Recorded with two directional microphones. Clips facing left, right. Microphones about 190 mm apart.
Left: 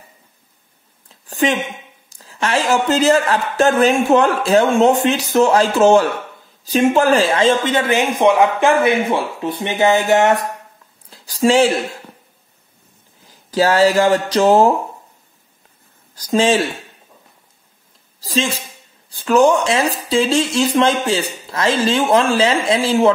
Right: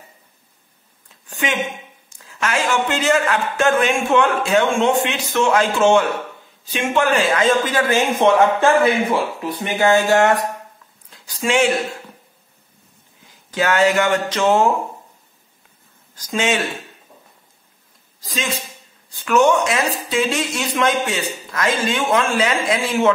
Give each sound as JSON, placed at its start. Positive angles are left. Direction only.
{"t": 1.2, "sound": "a sound", "side_deg": 35}
{"t": 2.0, "sound": "speech", "side_deg": 35}
{"t": 11.1, "sound": "a sound", "side_deg": 35}
{"t": 13.5, "sound": "speech", "side_deg": 35}
{"t": 16.2, "sound": "speech", "side_deg": 35}
{"t": 18.2, "sound": "speech", "side_deg": 30}